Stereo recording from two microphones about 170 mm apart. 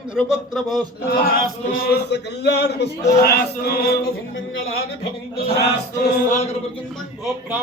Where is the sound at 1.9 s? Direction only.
80° left.